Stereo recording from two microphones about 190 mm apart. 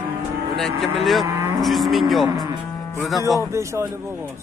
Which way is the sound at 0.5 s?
Centre (ahead or behind).